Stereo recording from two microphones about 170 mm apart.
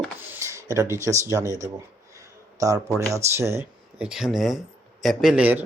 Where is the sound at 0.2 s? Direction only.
15° right (ahead or behind).